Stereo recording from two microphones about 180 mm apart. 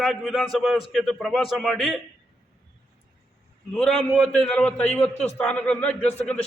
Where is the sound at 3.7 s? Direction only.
5° left (ahead or behind).